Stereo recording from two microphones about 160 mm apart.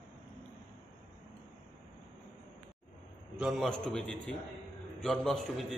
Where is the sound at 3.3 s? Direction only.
Centre (ahead or behind).